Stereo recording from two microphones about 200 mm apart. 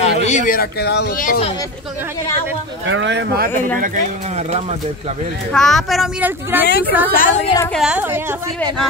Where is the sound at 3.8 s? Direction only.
40° right (ahead or behind).